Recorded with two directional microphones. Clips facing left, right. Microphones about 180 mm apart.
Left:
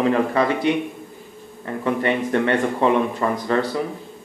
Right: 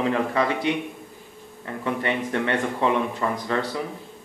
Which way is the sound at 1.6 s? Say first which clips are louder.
Left 5 dB; 45° left (ahead or behind).